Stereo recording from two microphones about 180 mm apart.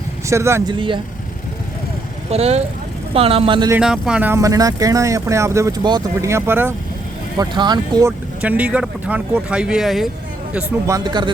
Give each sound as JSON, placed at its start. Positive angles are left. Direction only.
{"t": 0.3, "sound": "speech", "side_deg": -15}
{"t": 2.3, "sound": "a woman's voice", "side_deg": -35}
{"t": 3.8, "sound": "speech", "side_deg": -5}
{"t": 7.3, "sound": "speech", "side_deg": -25}
{"t": 8.4, "sound": "speech", "side_deg": -10}
{"t": 10.5, "sound": "speech", "side_deg": -10}